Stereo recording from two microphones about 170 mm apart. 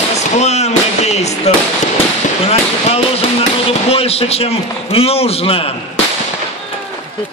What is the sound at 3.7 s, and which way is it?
Music, 35° left (ahead or behind).